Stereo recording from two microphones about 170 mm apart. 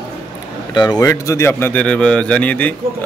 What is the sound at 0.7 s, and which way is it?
Speech, 25° left (ahead or behind).